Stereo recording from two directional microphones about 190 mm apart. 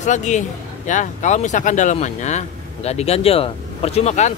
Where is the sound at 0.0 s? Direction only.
40° left (ahead or behind).